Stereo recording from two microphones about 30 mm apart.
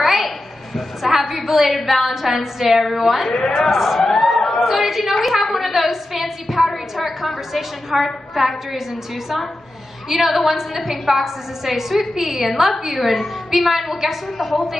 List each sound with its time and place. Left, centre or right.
0.0 s a sound: centre
1.8 s a woman's voice: centre
3.3 s a man's voice: left
3.7 s speech: centre
4.0 s chatter: centre
4.6 s a woman's voice: centre
5.3 s a sound: centre
7.1 s a woman's voice: centre
10.0 s a woman's voice: centre